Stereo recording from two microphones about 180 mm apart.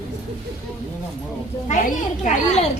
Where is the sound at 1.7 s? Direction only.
45° left (ahead or behind).